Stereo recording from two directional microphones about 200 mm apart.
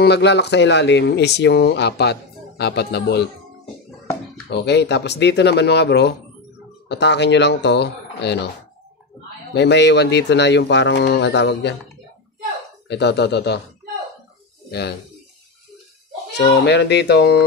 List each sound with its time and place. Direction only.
0.0 s speech: 55° left (ahead or behind)
4.5 s speech: 60° left (ahead or behind)
9.5 s speech: 60° left (ahead or behind)
12.8 s speech: 60° left (ahead or behind)
14.7 s speech: 55° left (ahead or behind)
16.3 s speech: 55° left (ahead or behind)